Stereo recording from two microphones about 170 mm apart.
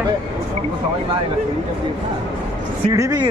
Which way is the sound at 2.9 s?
20° right (ahead or behind).